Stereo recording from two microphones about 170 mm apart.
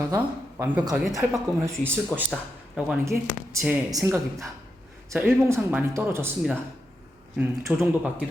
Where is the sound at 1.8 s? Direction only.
15° right (ahead or behind).